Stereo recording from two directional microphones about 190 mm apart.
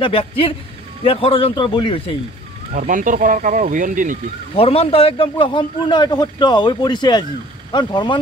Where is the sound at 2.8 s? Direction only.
45° right (ahead or behind).